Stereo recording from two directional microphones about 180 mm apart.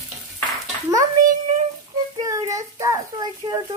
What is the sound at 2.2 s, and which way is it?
A child's voice, 15° right (ahead or behind).